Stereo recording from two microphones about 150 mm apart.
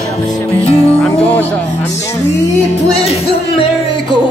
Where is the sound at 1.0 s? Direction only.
5° left (ahead or behind).